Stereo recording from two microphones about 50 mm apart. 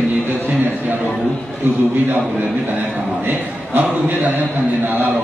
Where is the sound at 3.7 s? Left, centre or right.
Right.